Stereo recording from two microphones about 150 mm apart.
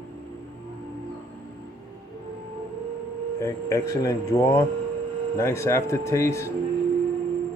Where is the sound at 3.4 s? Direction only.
20° left (ahead or behind).